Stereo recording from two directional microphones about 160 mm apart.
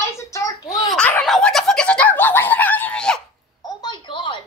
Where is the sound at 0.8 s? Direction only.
Centre (ahead or behind).